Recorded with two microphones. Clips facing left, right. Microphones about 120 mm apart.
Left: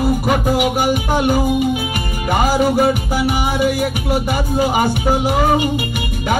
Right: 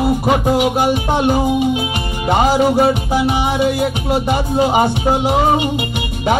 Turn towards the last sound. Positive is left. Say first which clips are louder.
# right 1 dB
turn(degrees=-25)  # may be behind; listen again after turning